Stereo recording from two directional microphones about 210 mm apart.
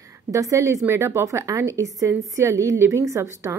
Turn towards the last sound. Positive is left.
turn(degrees=-15)  # may be behind; listen again after turning